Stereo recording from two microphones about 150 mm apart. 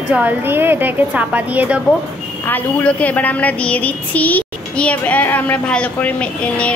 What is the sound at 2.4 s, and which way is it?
A woman's voice, 10° left (ahead or behind).